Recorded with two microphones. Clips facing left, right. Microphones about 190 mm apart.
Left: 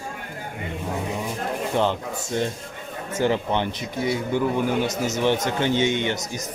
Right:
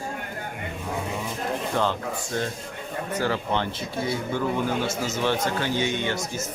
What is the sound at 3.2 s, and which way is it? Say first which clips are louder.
Speech: left 5 dB; 20° left (ahead or behind).